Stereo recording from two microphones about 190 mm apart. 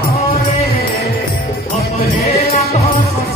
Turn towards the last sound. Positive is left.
turn(degrees=35)  # may be behind; listen again after turning